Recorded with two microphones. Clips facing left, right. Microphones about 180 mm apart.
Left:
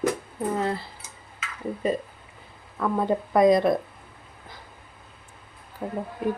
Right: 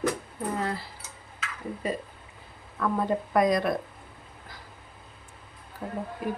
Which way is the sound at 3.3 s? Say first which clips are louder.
Left 6 dB; 25° left (ahead or behind).